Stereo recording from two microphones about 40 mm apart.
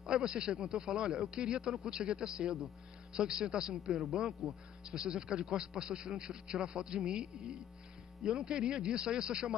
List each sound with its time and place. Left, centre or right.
0.0 s a man's voice: centre